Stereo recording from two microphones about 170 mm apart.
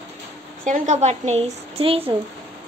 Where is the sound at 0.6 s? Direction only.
45° right (ahead or behind).